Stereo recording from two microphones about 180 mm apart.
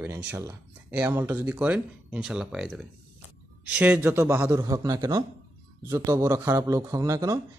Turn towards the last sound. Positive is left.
turn(degrees=-20)  # may be behind; listen again after turning